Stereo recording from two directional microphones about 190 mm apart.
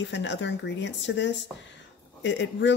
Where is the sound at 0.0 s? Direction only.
70° left (ahead or behind).